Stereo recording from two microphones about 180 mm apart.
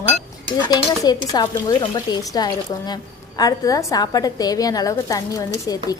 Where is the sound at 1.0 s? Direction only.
20° left (ahead or behind).